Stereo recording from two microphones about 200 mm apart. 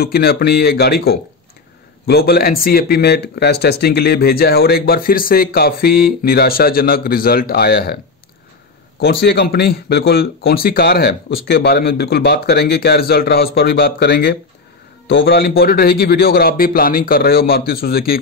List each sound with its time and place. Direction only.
0.0 s speech: 50° left (ahead or behind)
9.0 s speech: 55° left (ahead or behind)